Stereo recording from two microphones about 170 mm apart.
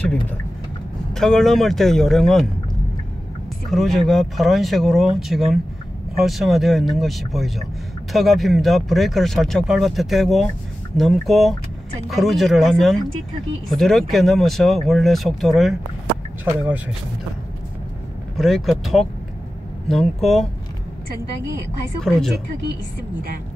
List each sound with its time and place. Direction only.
0.0 s vehicle: 10° left (ahead or behind)
1.1 s speech: 5° left (ahead or behind)
3.7 s speech: centre (ahead or behind)
18.4 s speech: centre (ahead or behind)
22.0 s speech: centre (ahead or behind)